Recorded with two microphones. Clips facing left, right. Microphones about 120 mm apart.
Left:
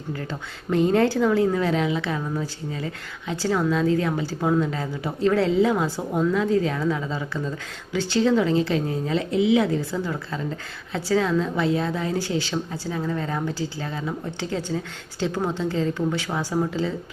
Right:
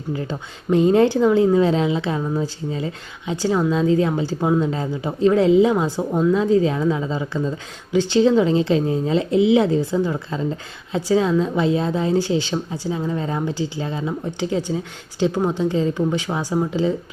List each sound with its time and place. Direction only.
0.1 s a woman's voice: 20° right (ahead or behind)